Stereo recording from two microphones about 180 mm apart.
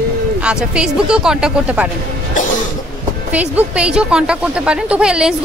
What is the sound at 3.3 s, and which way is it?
Speech, 10° right (ahead or behind).